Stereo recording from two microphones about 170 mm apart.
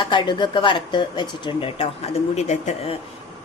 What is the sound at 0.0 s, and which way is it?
Speech, 25° left (ahead or behind).